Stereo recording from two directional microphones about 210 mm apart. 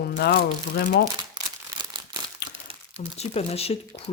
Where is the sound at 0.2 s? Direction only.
50° left (ahead or behind).